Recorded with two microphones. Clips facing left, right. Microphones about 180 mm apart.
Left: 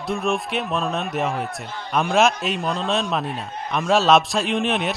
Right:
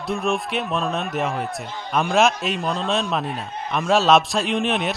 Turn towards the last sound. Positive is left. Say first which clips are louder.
# even
turn(degrees=0)  # may be behind; listen again after turning